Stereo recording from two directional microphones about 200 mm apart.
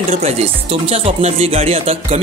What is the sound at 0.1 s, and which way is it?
A man's voice, 30° right (ahead or behind).